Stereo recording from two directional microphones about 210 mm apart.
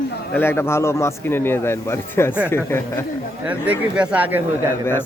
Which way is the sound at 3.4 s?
5° right (ahead or behind).